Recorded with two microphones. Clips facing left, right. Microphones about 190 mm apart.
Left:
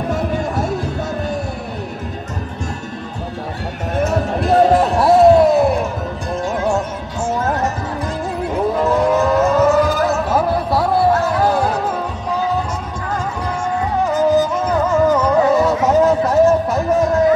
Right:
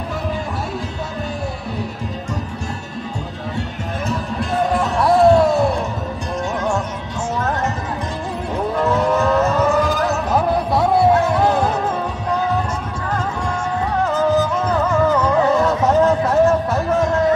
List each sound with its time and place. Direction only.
4.1 s music: 60° left (ahead or behind)
4.6 s a sound: 40° left (ahead or behind)
5.0 s a sound: 20° left (ahead or behind)
5.5 s music: centre (ahead or behind)
8.7 s vehicle: 10° left (ahead or behind)
14.7 s music: 5° left (ahead or behind)